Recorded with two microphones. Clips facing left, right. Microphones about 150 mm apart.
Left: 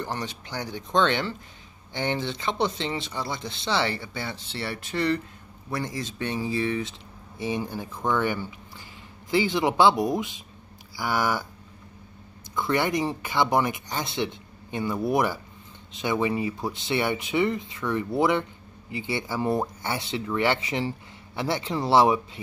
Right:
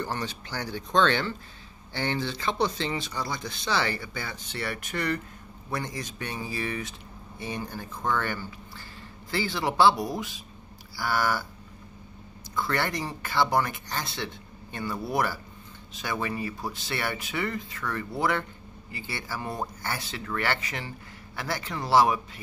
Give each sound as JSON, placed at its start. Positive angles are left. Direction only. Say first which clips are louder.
{"t": 0.0, "sound": "speech", "louder": "even", "side_deg": 20}
{"t": 11.0, "sound": "a sound", "louder": "left 1 dB", "side_deg": 15}
{"t": 12.5, "sound": "speech", "louder": "left 4 dB", "side_deg": 20}